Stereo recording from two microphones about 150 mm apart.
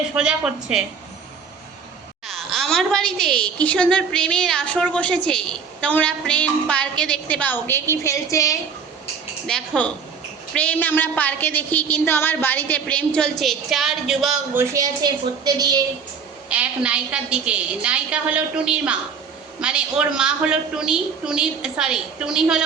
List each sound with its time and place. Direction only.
0.1 s a woman's voice: 5° right (ahead or behind)
2.2 s a sound: centre (ahead or behind)
3.6 s a woman's voice: 10° left (ahead or behind)
9.5 s a woman's voice: 5° left (ahead or behind)
14.5 s a woman's voice: 20° right (ahead or behind)
16.5 s a woman's voice: 10° right (ahead or behind)